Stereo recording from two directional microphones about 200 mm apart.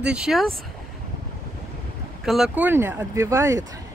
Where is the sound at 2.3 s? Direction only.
5° right (ahead or behind).